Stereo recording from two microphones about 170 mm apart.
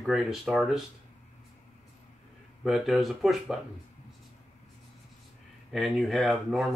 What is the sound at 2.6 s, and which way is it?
Speech, centre (ahead or behind).